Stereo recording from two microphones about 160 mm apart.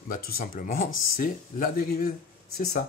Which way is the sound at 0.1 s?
60° left (ahead or behind).